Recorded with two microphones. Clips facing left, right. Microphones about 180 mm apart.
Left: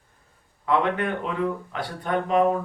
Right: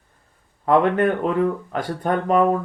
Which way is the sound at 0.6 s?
45° right (ahead or behind).